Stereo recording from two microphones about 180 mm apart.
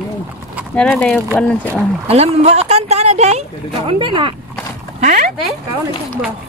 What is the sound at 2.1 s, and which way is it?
Speech, 35° right (ahead or behind).